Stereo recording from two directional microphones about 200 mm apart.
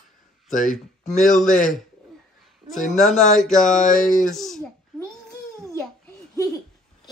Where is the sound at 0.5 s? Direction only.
40° left (ahead or behind).